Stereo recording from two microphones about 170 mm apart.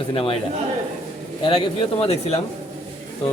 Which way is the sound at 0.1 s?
35° left (ahead or behind).